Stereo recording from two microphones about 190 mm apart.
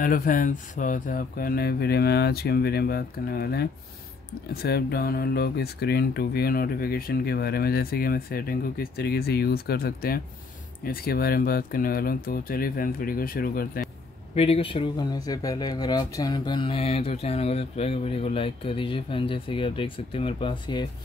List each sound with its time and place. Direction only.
0.0 s speech: 45° left (ahead or behind)
14.3 s speech: 30° left (ahead or behind)